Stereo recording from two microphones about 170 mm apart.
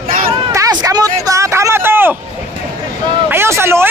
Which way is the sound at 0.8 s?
20° right (ahead or behind).